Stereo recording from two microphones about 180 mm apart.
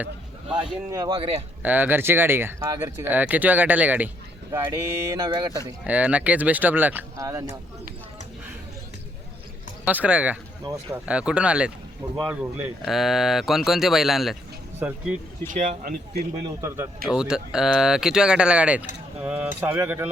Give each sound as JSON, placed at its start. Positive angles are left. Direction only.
{"t": 0.9, "sound": "speech", "side_deg": -20}
{"t": 1.6, "sound": "speech", "side_deg": -10}
{"t": 4.5, "sound": "speech", "side_deg": -20}
{"t": 5.8, "sound": "speech", "side_deg": -5}
{"t": 9.8, "sound": "speech", "side_deg": -5}
{"t": 15.4, "sound": "speech", "side_deg": -45}
{"t": 16.6, "sound": "speech", "side_deg": -15}
{"t": 17.1, "sound": "speech", "side_deg": -5}